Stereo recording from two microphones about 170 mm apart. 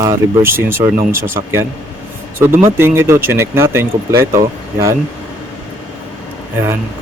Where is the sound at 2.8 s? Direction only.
15° right (ahead or behind).